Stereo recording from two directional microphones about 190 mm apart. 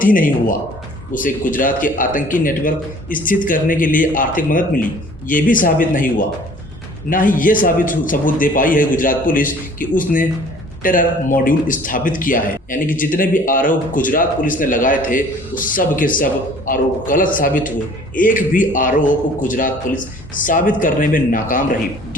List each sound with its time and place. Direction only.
0.0 s a man's voice: 45° left (ahead or behind)